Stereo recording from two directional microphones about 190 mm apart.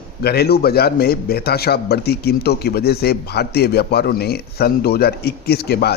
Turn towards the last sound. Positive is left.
turn(degrees=55)  # may be behind; listen again after turning